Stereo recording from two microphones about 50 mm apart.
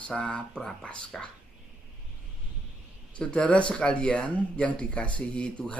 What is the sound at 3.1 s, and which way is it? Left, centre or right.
Speech, left.